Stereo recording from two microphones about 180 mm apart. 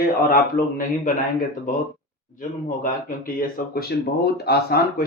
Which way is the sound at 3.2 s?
50° left (ahead or behind).